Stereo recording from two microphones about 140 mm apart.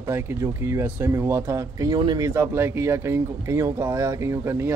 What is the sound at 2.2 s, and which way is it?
Speech, 20° right (ahead or behind).